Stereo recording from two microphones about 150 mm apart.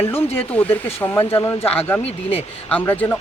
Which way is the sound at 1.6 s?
40° left (ahead or behind).